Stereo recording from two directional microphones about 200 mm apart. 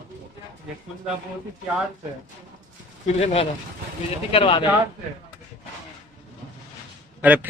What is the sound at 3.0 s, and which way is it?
Speech, 30° left (ahead or behind).